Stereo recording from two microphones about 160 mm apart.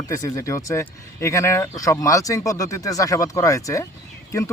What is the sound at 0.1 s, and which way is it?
Speech, 20° left (ahead or behind).